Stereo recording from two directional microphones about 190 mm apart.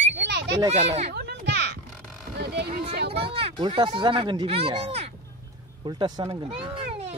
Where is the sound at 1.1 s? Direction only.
60° right (ahead or behind).